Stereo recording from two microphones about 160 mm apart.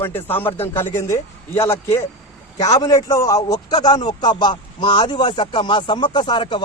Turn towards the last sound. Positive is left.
turn(degrees=30)  # may be behind; listen again after turning